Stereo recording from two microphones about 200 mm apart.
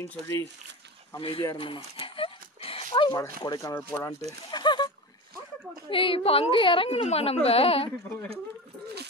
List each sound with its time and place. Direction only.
0.0 s speech: 15° left (ahead or behind)
2.0 s dog: 25° left (ahead or behind)
3.4 s speech: 15° left (ahead or behind)
4.5 s a sound: 20° left (ahead or behind)
5.9 s speech: 25° left (ahead or behind)